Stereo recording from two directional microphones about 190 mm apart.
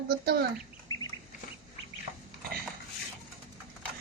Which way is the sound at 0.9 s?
20° left (ahead or behind).